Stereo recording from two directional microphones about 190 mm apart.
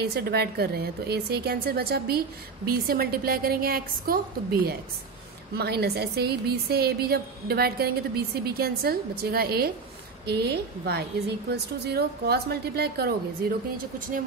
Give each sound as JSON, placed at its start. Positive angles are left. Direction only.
{"t": 0.0, "sound": "a woman's voice", "side_deg": -55}
{"t": 13.9, "sound": "speech", "side_deg": -45}